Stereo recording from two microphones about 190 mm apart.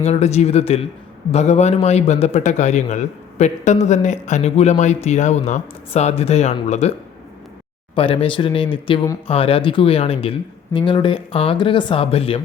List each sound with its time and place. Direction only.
0.0 s a man's voice: 35° left (ahead or behind)
7.9 s speech: 30° left (ahead or behind)